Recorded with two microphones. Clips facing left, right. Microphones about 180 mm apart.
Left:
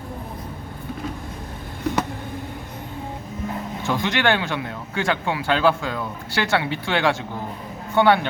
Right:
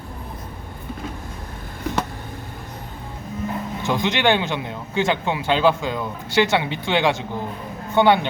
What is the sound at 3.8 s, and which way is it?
Speech, 20° right (ahead or behind).